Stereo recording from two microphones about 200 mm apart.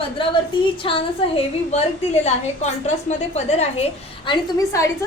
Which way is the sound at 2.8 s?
35° left (ahead or behind).